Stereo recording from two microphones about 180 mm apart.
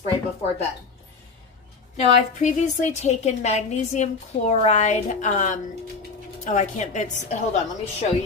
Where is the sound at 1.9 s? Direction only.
40° left (ahead or behind).